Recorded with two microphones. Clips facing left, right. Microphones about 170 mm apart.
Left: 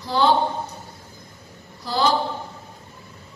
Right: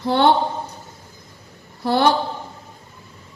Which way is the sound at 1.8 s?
60° right (ahead or behind).